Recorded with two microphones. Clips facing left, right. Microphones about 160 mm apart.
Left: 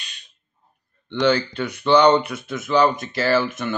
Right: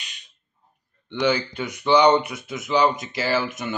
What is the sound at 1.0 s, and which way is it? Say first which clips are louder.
Speech: left 3 dB; 15° right (ahead or behind).